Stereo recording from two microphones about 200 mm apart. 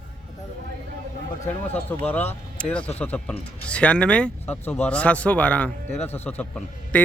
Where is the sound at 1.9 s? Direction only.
10° left (ahead or behind).